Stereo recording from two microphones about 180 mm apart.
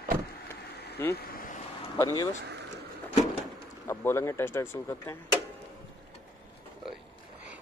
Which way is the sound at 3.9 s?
15° left (ahead or behind).